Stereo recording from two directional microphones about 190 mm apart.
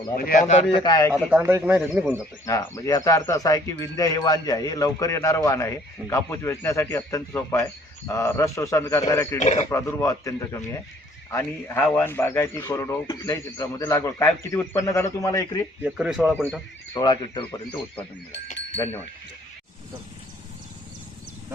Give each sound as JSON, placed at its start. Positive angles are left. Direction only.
{"t": 0.2, "sound": "speech", "side_deg": 45}
{"t": 0.9, "sound": "speech", "side_deg": 20}
{"t": 1.1, "sound": "speech", "side_deg": -5}
{"t": 2.5, "sound": "a man's voice", "side_deg": 15}
{"t": 9.4, "sound": "speech", "side_deg": 35}
{"t": 9.6, "sound": "a man's voice", "side_deg": 15}
{"t": 15.8, "sound": "speech", "side_deg": -5}
{"t": 16.3, "sound": "a man's voice", "side_deg": 10}
{"t": 16.9, "sound": "speech", "side_deg": 20}